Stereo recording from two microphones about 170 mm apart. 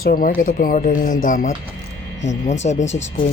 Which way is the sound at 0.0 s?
55° left (ahead or behind).